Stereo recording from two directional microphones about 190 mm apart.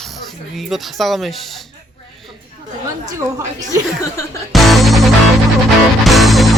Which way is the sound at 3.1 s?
15° right (ahead or behind).